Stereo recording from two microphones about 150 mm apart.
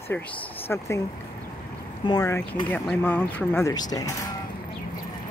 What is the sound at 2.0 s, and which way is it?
Speech, 20° left (ahead or behind).